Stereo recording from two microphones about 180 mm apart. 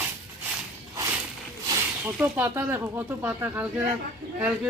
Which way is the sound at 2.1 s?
10° right (ahead or behind).